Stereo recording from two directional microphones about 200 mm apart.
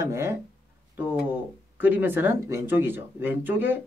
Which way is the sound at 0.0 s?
15° right (ahead or behind).